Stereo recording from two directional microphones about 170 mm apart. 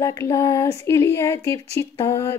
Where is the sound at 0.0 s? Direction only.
15° left (ahead or behind).